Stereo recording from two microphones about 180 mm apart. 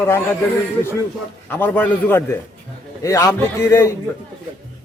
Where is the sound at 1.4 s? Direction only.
10° left (ahead or behind).